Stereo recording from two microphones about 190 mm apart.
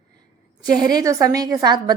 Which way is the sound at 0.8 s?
20° right (ahead or behind).